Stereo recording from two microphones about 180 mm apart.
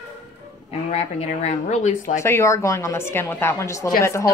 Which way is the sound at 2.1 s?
15° left (ahead or behind).